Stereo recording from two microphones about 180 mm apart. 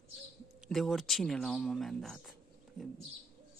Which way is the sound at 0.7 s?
Centre (ahead or behind).